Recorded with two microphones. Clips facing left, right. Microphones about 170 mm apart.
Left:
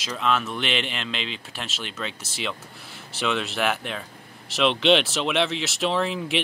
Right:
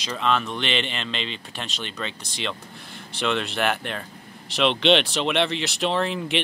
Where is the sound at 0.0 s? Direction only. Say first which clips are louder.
Right 1 dB; centre (ahead or behind).